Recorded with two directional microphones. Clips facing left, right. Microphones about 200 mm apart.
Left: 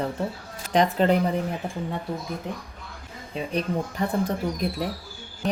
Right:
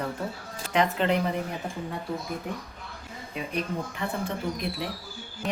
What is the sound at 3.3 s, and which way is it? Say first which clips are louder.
Speech: left 4 dB; 35° left (ahead or behind).